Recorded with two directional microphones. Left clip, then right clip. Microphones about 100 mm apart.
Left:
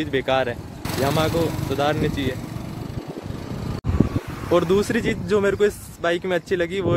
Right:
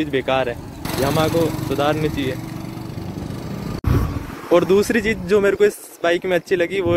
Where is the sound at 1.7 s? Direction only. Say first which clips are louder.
Right 2 dB; 40° left (ahead or behind).